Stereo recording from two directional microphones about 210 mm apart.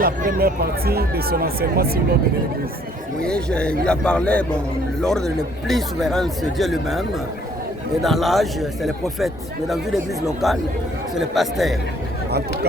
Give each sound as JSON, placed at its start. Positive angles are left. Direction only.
{"t": 0.0, "sound": "speech", "side_deg": -45}
{"t": 3.2, "sound": "speech", "side_deg": 5}
{"t": 8.0, "sound": "speech", "side_deg": 0}